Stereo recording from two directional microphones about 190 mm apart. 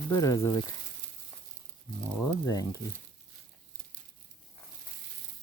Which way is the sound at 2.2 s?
15° left (ahead or behind).